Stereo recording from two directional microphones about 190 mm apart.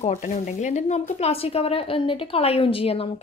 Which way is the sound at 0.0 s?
40° left (ahead or behind).